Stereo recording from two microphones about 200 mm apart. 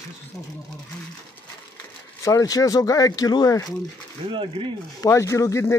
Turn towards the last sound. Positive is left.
turn(degrees=15)  # may be behind; listen again after turning